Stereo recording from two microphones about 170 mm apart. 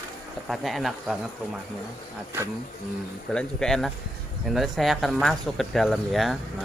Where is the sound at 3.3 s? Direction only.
5° left (ahead or behind).